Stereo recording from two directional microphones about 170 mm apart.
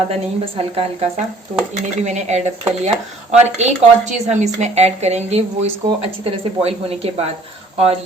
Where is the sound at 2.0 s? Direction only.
45° right (ahead or behind).